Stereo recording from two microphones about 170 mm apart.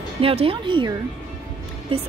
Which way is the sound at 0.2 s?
35° right (ahead or behind).